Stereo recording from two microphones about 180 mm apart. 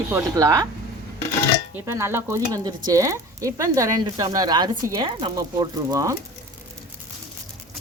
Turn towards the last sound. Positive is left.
turn(degrees=-20)  # may be behind; listen again after turning